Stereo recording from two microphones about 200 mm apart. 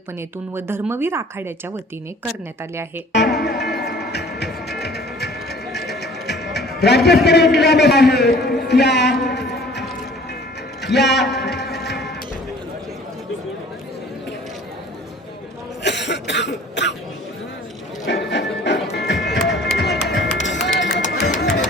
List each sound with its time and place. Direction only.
0.5 s speech: 10° right (ahead or behind)
3.1 s speech: 55° left (ahead or behind)
3.8 s music: 55° left (ahead or behind)
7.3 s a man's voice: 55° left (ahead or behind)
10.8 s a man's voice: 60° left (ahead or behind)
11.3 s a sound: 55° left (ahead or behind)
11.9 s sheep: 55° left (ahead or behind)
15.8 s cough: 60° left (ahead or behind)
18.0 s music: 60° left (ahead or behind)